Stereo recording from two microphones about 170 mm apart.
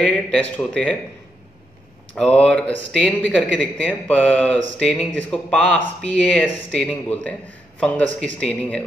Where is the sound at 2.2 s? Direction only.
5° left (ahead or behind).